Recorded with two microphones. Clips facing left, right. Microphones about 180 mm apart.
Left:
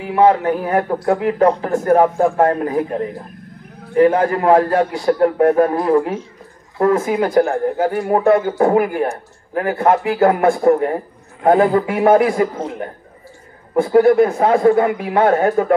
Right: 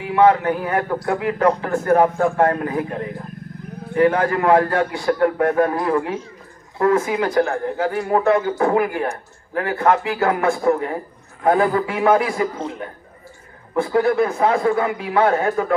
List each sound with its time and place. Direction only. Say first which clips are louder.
0.1 s a man's voice: left 2 dB; 30° left (ahead or behind)
3.9 s a man's voice: left 3 dB; 30° left (ahead or behind); by 15.6 s 45° left (ahead or behind)